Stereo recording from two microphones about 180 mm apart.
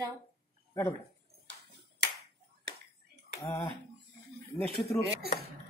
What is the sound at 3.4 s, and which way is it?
Speech, 25° left (ahead or behind).